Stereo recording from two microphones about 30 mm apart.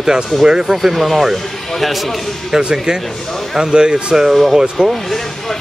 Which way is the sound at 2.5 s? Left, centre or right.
Centre.